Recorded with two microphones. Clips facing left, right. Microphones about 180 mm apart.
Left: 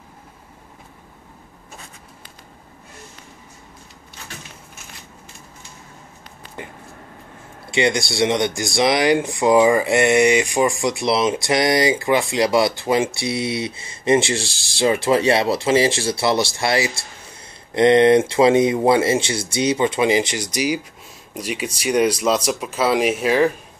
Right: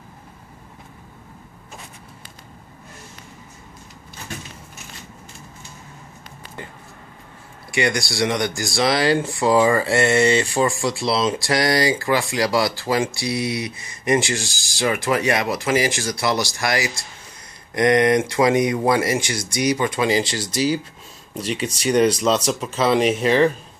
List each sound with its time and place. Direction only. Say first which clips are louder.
7.7 s speech: left 2 dB; 25° left (ahead or behind)